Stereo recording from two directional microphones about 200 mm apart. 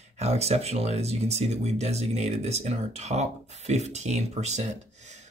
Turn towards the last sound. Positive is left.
turn(degrees=-35)  # may be behind; listen again after turning